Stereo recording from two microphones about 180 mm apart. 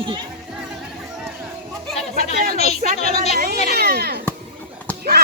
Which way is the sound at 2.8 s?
50° right (ahead or behind).